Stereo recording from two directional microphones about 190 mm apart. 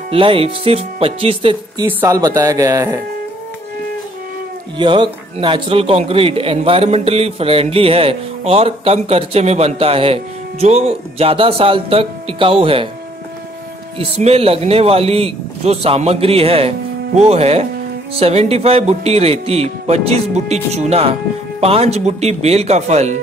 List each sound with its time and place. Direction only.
0.1 s speech: 30° right (ahead or behind)
1.9 s speech: 15° right (ahead or behind)
4.7 s a man's voice: 25° right (ahead or behind)
13.9 s a man's voice: 35° right (ahead or behind)